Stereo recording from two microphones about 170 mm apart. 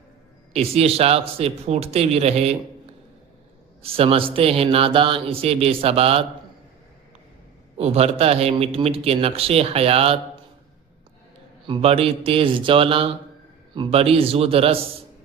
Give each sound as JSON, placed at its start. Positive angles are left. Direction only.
{"t": 0.5, "sound": "speech", "side_deg": -35}
{"t": 3.8, "sound": "speech", "side_deg": -35}
{"t": 7.8, "sound": "speech", "side_deg": -40}
{"t": 11.6, "sound": "speech", "side_deg": -30}